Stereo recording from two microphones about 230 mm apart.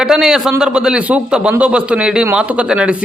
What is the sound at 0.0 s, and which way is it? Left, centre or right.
A man's voice, centre.